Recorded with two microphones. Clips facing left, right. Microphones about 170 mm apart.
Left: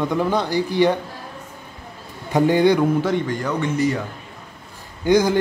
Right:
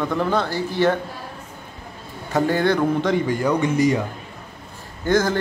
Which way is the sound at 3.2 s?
10° right (ahead or behind).